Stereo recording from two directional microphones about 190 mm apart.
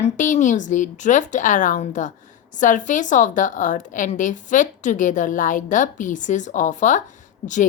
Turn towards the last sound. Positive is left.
turn(degrees=40)  # may be behind; listen again after turning